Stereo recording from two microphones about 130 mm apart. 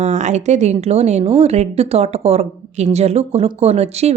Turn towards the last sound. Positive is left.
turn(degrees=-55)  # may be behind; listen again after turning